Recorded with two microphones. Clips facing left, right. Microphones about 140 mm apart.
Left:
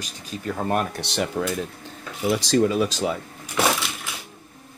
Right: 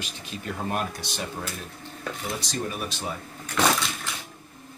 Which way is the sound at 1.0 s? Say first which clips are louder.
Left 8 dB; 70° left (ahead or behind).